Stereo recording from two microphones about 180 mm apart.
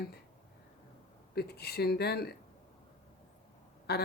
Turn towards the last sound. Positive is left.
turn(degrees=65)  # may be behind; listen again after turning